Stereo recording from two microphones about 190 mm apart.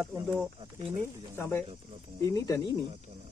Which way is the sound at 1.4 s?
15° left (ahead or behind).